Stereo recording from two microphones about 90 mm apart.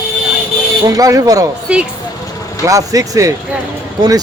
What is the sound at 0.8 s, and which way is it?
Speech, 40° right (ahead or behind).